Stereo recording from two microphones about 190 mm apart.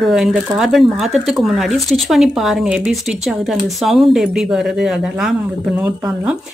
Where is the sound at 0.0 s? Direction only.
Centre (ahead or behind).